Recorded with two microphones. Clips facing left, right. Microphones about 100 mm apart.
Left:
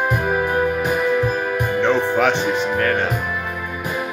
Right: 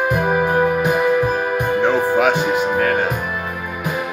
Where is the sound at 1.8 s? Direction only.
10° right (ahead or behind).